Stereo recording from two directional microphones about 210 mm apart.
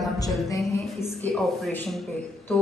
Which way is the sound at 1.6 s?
Centre (ahead or behind).